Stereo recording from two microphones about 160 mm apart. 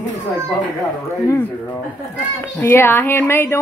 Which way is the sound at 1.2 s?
15° left (ahead or behind).